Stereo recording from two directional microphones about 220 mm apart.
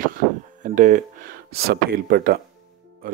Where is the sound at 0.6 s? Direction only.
35° right (ahead or behind).